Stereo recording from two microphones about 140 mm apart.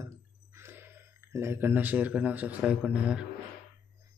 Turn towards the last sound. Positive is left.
turn(degrees=-10)  # may be behind; listen again after turning